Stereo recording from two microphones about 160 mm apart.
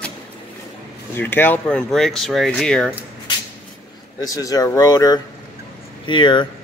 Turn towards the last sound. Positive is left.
turn(degrees=30)  # may be behind; listen again after turning